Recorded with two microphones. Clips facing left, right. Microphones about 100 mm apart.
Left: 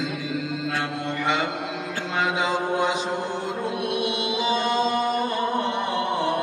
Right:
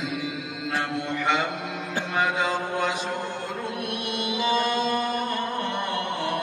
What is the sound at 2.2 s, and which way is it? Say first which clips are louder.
Music: left 4 dB; 15° left (ahead or behind).